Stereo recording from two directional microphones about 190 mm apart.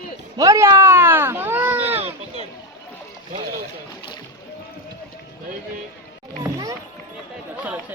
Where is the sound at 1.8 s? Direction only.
30° right (ahead or behind).